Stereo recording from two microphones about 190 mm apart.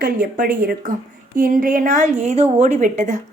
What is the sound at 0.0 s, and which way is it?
A woman's voice, 50° right (ahead or behind).